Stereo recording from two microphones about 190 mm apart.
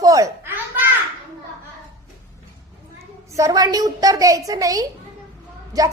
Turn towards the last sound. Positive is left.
turn(degrees=-20)  # may be behind; listen again after turning